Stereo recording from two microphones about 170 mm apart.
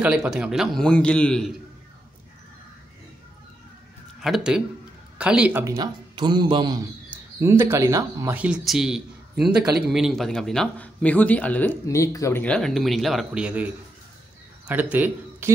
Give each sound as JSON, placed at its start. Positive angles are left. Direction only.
{"t": 0.0, "sound": "a man's voice", "side_deg": -5}
{"t": 4.2, "sound": "a man's voice", "side_deg": -5}
{"t": 5.8, "sound": "a man's voice", "side_deg": -25}
{"t": 7.1, "sound": "speech", "side_deg": -15}
{"t": 8.4, "sound": "a man's voice", "side_deg": -5}
{"t": 14.7, "sound": "speech", "side_deg": -10}